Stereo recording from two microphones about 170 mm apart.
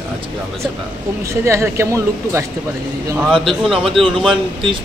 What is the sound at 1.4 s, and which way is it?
Speech, 15° right (ahead or behind).